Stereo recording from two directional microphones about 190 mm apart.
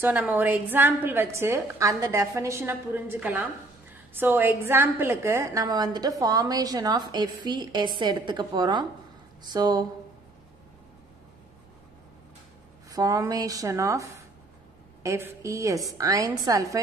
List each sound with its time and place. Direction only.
0.0 s a woman's voice: 10° right (ahead or behind)
12.9 s a woman's voice: 20° right (ahead or behind)